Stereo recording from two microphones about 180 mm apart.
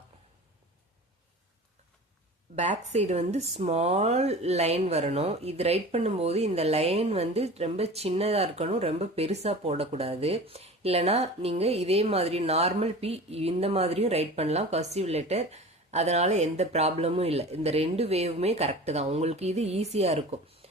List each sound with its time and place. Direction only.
2.6 s speech: 40° right (ahead or behind)